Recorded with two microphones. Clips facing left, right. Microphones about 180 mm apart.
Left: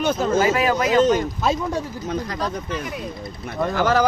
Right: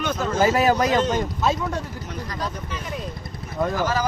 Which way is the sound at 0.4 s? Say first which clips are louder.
Right 1 dB; 40° right (ahead or behind).